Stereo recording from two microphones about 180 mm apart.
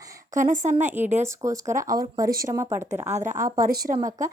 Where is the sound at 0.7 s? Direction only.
40° right (ahead or behind).